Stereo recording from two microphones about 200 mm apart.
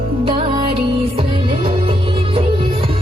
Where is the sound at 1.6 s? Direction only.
30° right (ahead or behind).